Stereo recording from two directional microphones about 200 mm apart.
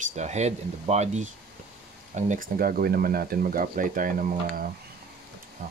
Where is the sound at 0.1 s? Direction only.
35° right (ahead or behind).